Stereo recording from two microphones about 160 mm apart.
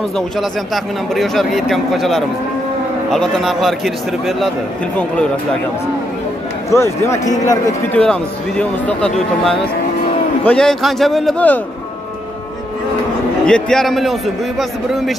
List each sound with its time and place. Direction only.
1.1 s speech: centre (ahead or behind)
6.7 s speech: 15° left (ahead or behind)
7.9 s speech: 5° left (ahead or behind)
13.5 s speech: 5° left (ahead or behind)